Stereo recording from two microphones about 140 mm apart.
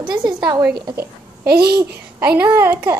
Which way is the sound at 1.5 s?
90° right.